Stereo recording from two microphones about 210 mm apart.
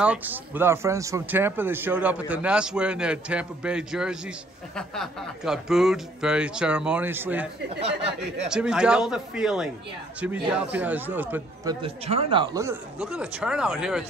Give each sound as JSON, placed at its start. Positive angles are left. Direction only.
{"t": 0.0, "sound": "a man's voice", "side_deg": -5}
{"t": 8.5, "sound": "a man's voice", "side_deg": -5}
{"t": 11.8, "sound": "speech", "side_deg": -30}
{"t": 13.0, "sound": "a man's voice", "side_deg": -5}